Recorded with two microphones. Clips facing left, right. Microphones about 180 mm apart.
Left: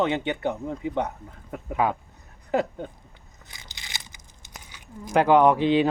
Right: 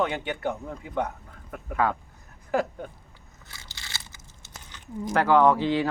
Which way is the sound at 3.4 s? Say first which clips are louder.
Even; 15° left (ahead or behind).